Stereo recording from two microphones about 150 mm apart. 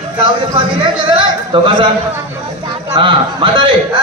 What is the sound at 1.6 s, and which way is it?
Speech, 30° right (ahead or behind).